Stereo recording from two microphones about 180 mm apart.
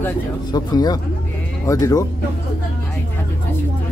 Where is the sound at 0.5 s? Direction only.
20° left (ahead or behind).